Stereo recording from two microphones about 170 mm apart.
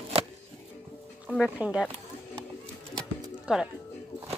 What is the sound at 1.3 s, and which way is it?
Speech, 5° right (ahead or behind).